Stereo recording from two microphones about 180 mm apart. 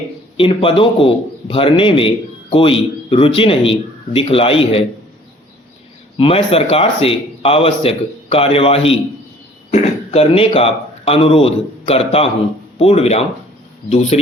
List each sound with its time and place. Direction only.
0.3 s a man's voice: 30° left (ahead or behind)
6.1 s a man's voice: 30° left (ahead or behind)